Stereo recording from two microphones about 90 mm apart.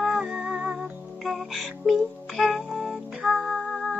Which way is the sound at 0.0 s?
5° right (ahead or behind).